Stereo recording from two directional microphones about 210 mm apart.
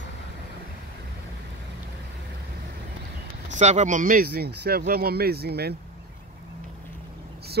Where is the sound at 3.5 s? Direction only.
35° right (ahead or behind).